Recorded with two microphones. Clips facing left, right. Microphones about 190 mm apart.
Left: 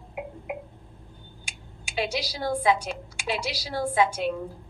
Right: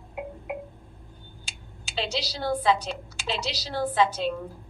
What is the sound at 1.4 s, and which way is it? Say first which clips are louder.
Speech: left 1 dB; 10° left (ahead or behind).